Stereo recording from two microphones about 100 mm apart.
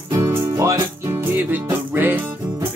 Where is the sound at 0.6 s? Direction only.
30° right (ahead or behind).